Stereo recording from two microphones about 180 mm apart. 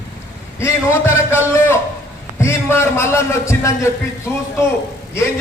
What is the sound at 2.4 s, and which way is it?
A man's voice, 15° left (ahead or behind).